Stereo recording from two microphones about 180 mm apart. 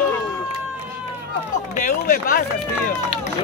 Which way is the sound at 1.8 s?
50° left (ahead or behind).